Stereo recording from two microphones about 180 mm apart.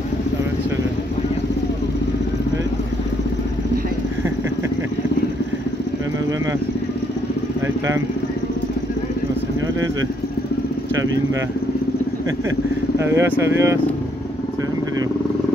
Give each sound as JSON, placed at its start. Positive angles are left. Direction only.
{"t": 7.6, "sound": "motorcycle", "side_deg": -15}
{"t": 13.0, "sound": "speech", "side_deg": -15}